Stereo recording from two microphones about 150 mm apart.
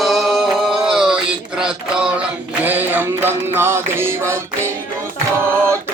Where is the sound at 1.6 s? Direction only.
5° right (ahead or behind).